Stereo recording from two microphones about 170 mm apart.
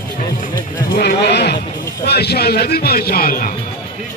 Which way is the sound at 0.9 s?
75° left (ahead or behind).